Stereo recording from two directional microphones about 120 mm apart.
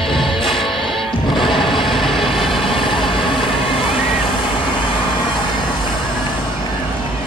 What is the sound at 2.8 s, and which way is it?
Vehicle, 45° left (ahead or behind).